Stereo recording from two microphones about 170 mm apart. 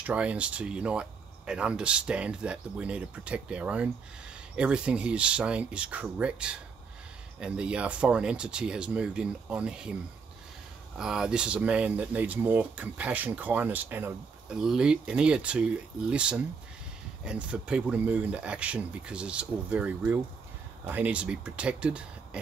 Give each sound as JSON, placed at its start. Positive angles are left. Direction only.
{"t": 0.0, "sound": "speech", "side_deg": -10}
{"t": 11.0, "sound": "speech", "side_deg": -5}